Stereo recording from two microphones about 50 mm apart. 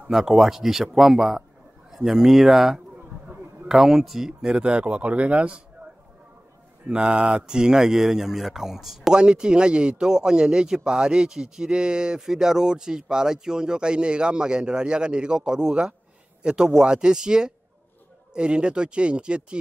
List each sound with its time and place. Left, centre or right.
0.1 s a man's voice: centre; by 5.6 s right
6.9 s a man's voice: centre
9.1 s a man's voice: centre